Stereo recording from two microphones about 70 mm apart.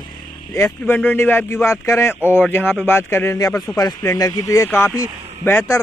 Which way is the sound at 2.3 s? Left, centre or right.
Left.